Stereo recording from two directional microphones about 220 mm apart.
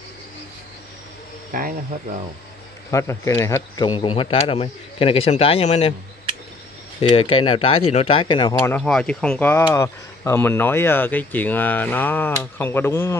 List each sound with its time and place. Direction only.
1.5 s speech: 40° right (ahead or behind)
2.9 s speech: 15° left (ahead or behind)
7.0 s speech: 25° left (ahead or behind)